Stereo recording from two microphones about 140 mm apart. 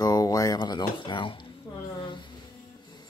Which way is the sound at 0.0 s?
25° left (ahead or behind).